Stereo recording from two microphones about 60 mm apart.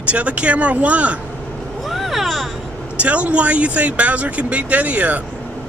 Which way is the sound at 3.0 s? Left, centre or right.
Right.